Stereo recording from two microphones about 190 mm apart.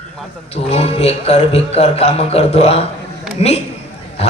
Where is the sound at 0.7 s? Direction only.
30° left (ahead or behind).